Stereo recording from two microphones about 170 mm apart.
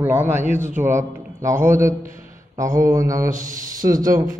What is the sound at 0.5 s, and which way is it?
Speech, 45° right (ahead or behind).